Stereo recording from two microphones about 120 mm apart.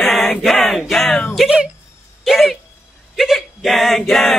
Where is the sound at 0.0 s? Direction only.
5° left (ahead or behind).